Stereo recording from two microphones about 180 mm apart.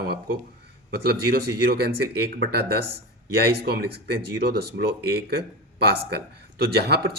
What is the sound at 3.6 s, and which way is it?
A man's voice, 60° right (ahead or behind).